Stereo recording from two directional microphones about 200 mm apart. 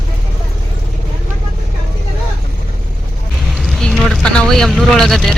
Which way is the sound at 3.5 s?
Centre (ahead or behind).